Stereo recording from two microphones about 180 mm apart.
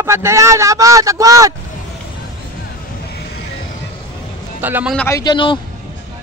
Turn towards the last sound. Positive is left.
turn(degrees=25)  # may be behind; listen again after turning